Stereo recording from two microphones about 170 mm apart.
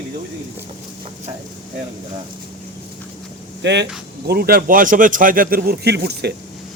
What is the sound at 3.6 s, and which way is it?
Speech, 90° right.